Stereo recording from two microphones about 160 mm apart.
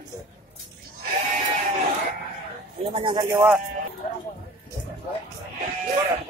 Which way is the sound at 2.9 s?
25° right (ahead or behind).